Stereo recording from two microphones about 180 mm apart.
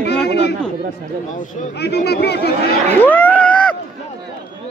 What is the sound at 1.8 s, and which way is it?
Speech, 65° left (ahead or behind).